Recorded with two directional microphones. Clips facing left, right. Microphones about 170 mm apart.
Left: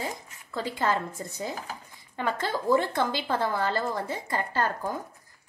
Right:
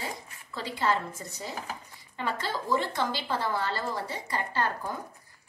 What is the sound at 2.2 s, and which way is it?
A woman's voice, 50° left (ahead or behind).